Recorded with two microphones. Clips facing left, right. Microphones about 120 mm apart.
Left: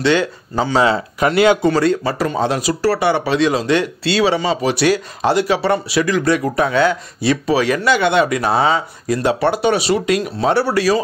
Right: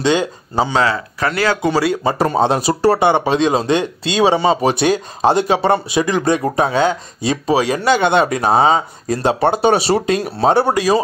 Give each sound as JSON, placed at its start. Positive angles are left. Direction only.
{"t": 0.0, "sound": "speech", "side_deg": -20}
{"t": 0.8, "sound": "speech", "side_deg": 25}
{"t": 1.6, "sound": "speech", "side_deg": -10}
{"t": 2.2, "sound": "speech", "side_deg": -30}
{"t": 10.5, "sound": "speech", "side_deg": -20}